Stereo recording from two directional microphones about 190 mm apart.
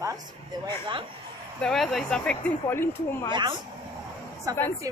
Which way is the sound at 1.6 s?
Centre (ahead or behind).